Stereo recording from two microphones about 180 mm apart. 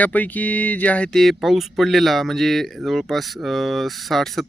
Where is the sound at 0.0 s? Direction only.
10° left (ahead or behind).